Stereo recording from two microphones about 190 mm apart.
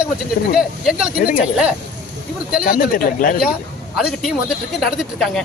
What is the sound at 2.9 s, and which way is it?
Speech, 45° left (ahead or behind).